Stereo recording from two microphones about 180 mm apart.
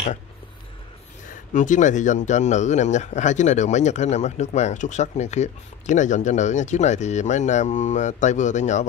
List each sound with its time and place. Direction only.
1.3 s speech: 45° left (ahead or behind)